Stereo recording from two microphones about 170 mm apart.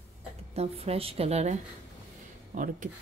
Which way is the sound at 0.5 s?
35° right (ahead or behind).